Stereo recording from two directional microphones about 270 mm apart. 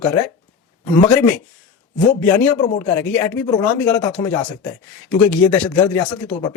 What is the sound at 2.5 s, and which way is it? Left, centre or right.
Speech, left.